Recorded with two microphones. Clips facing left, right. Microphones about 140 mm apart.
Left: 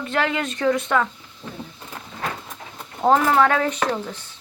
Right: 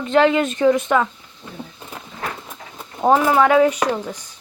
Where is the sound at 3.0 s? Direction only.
10° right (ahead or behind).